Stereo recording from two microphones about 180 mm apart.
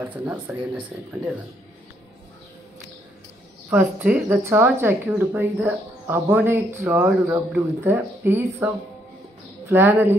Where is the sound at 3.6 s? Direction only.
10° right (ahead or behind).